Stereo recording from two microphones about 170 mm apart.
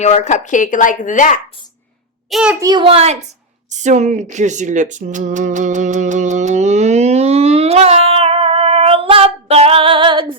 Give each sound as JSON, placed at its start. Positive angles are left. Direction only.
{"t": 0.0, "sound": "speech", "side_deg": 40}
{"t": 2.3, "sound": "a child's voice", "side_deg": -5}
{"t": 2.6, "sound": "a child's voice", "side_deg": -25}